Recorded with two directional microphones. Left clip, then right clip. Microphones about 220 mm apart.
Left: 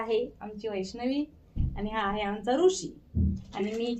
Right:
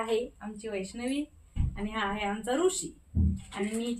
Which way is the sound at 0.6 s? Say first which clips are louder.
Left 3 dB; 20° right (ahead or behind).